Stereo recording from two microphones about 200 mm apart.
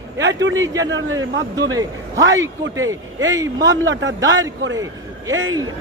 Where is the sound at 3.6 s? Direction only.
65° right (ahead or behind).